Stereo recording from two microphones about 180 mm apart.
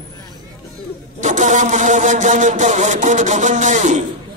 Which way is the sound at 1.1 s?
40° right (ahead or behind).